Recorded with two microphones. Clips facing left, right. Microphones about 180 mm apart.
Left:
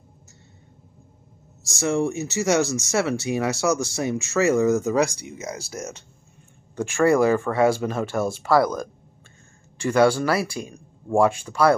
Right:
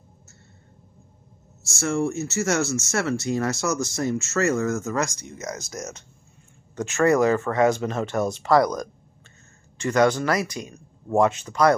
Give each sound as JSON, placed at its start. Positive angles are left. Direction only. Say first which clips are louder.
{"t": 1.8, "sound": "speech", "louder": "left 1 dB", "side_deg": 15}
{"t": 5.5, "sound": "speech", "louder": "even", "side_deg": 30}
{"t": 6.7, "sound": "speech", "louder": "left 1 dB", "side_deg": 10}